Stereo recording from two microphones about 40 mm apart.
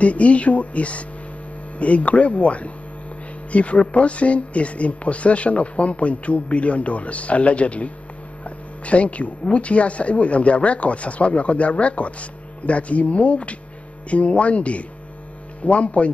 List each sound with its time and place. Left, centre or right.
0.0 s speech: left